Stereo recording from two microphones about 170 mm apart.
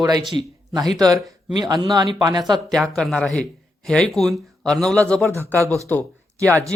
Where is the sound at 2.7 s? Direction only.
Centre (ahead or behind).